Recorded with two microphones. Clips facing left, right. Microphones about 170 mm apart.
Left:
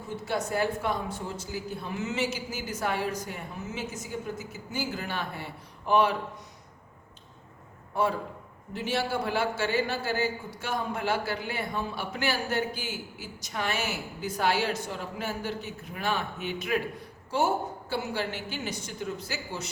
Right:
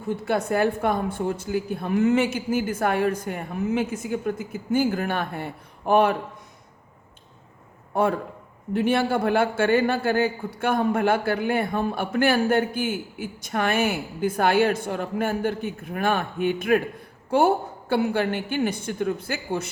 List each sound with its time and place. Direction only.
0.1 s a woman's voice: 55° right (ahead or behind)
8.7 s a man's voice: 55° right (ahead or behind)